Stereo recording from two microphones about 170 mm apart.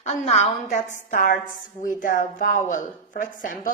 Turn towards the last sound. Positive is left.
turn(degrees=50)  # may be behind; listen again after turning